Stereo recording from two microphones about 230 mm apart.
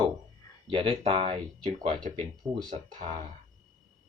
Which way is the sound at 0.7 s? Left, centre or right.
Right.